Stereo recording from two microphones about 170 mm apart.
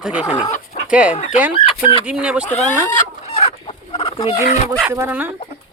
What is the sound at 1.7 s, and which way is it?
Speech, 35° left (ahead or behind).